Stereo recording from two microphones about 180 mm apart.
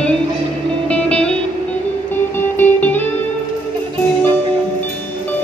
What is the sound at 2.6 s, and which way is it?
Music, 10° left (ahead or behind).